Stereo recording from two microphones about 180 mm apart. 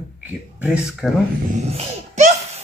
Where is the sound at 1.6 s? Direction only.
35° right (ahead or behind).